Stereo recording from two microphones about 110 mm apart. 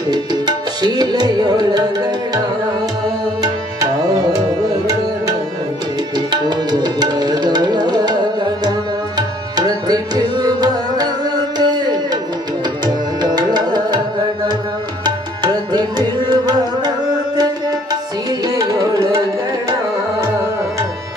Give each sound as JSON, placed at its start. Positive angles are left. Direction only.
{"t": 0.1, "sound": "tabla", "side_deg": -40}
{"t": 3.4, "sound": "tabla", "side_deg": -35}
{"t": 6.1, "sound": "tabla", "side_deg": -40}
{"t": 9.6, "sound": "music", "side_deg": -35}
{"t": 15.0, "sound": "tabla", "side_deg": -40}